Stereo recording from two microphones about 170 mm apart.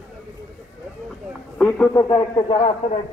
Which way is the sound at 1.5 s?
5° left (ahead or behind).